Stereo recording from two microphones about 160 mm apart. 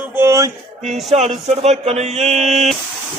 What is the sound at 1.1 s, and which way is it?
Speech, 45° right (ahead or behind).